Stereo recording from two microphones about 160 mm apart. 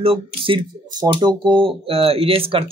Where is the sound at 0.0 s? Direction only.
35° right (ahead or behind).